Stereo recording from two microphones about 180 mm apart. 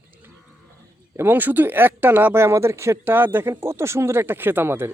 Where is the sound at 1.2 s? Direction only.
10° right (ahead or behind).